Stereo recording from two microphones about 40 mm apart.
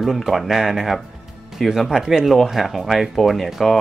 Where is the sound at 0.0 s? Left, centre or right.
Centre.